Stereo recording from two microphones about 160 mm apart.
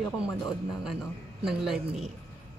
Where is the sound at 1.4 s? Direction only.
Centre (ahead or behind).